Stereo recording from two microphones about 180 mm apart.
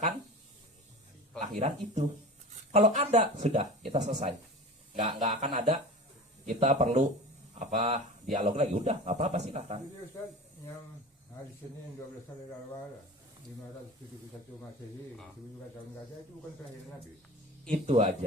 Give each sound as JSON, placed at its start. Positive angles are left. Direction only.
{"t": 1.5, "sound": "speech", "side_deg": -40}
{"t": 6.4, "sound": "speech", "side_deg": -40}
{"t": 17.7, "sound": "speech", "side_deg": -40}